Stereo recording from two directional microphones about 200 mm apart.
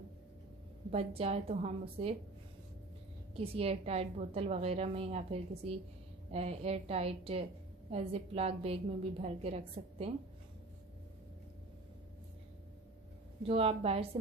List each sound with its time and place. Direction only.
0.9 s a woman's voice: 30° right (ahead or behind)
3.3 s a woman's voice: 30° right (ahead or behind)
13.5 s a woman's voice: 30° right (ahead or behind)